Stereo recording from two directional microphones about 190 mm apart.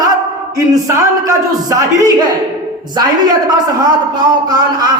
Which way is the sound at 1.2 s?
20° right (ahead or behind).